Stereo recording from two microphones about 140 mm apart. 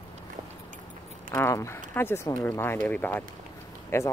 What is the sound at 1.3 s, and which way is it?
Speech, 20° left (ahead or behind).